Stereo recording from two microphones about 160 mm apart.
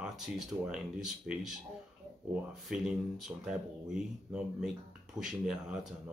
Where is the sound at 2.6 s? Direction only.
Centre (ahead or behind).